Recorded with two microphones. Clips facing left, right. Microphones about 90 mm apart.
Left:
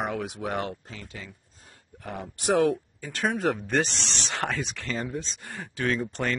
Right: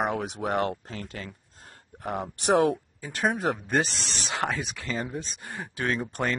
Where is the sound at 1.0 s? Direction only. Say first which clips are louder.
Right 4 dB; 60° right (ahead or behind).